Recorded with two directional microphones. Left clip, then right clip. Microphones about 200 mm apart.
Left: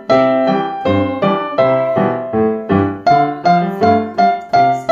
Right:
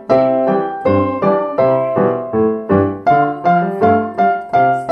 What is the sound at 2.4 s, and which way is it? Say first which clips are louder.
Music: right 1 dB; 15° left (ahead or behind).